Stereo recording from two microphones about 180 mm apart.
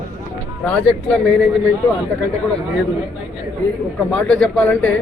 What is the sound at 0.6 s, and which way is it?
Speech, 5° left (ahead or behind).